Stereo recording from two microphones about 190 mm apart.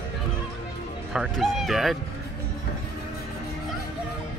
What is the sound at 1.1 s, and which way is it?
Speech, centre (ahead or behind).